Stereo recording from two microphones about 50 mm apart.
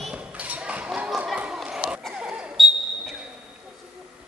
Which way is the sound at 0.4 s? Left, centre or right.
Right.